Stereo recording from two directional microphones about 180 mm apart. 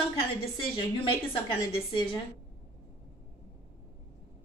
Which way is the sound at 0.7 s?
30° left (ahead or behind).